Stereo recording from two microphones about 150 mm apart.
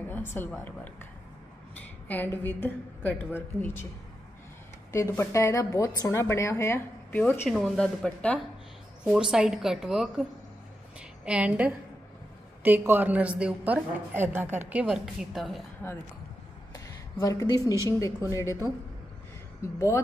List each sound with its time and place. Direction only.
0.1 s speech: 15° left (ahead or behind)
2.3 s a woman's voice: 10° left (ahead or behind)
4.9 s a woman's voice: 20° left (ahead or behind)
7.4 s a woman's voice: centre (ahead or behind)
9.1 s a woman's voice: 5° right (ahead or behind)
15.8 s a woman's voice: 15° left (ahead or behind)
16.7 s a sound: 20° left (ahead or behind)
17.8 s a woman's voice: 20° left (ahead or behind)